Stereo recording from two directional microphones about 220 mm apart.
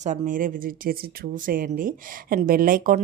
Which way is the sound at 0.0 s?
35° right (ahead or behind).